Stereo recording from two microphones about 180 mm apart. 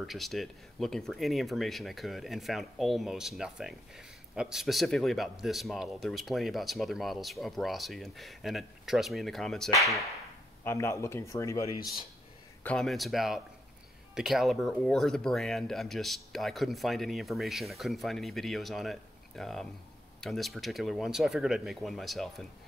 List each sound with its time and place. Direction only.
0.0 s speech: centre (ahead or behind)
10.6 s speech: 15° left (ahead or behind)
12.6 s speech: centre (ahead or behind)